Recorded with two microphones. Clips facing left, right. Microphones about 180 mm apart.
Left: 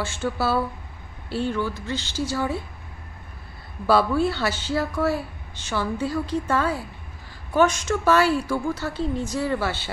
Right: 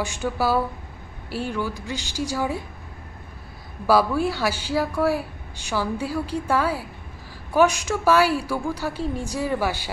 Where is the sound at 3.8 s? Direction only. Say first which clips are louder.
Even; 10° right (ahead or behind).